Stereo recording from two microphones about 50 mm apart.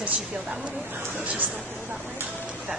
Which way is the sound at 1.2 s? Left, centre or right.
Right.